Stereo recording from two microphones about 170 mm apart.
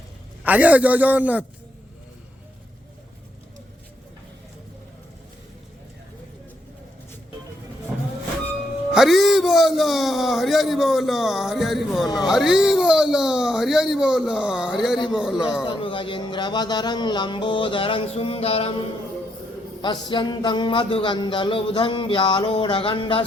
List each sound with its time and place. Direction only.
0.4 s a man's voice: 10° right (ahead or behind)
8.9 s speech: centre (ahead or behind)
15.6 s music: 30° left (ahead or behind)
19.8 s music: 25° left (ahead or behind)